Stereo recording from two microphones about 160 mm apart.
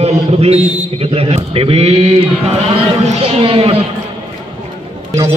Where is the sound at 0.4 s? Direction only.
40° right (ahead or behind).